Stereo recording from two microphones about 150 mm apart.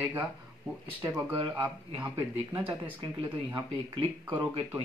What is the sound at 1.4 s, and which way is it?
Speech, 30° right (ahead or behind).